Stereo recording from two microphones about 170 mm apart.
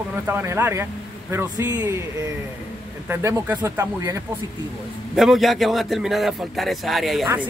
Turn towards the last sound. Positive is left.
turn(degrees=0)  # may be behind; listen again after turning